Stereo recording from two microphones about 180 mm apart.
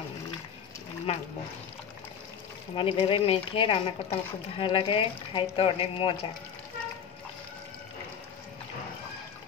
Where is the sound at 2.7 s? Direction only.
30° left (ahead or behind).